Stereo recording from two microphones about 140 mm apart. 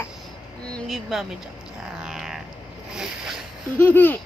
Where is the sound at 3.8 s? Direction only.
15° left (ahead or behind).